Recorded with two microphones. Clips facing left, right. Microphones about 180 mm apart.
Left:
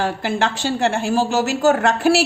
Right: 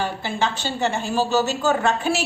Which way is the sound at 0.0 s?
90° left.